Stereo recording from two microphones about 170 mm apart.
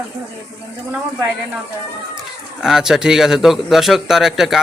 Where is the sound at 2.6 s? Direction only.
5° right (ahead or behind).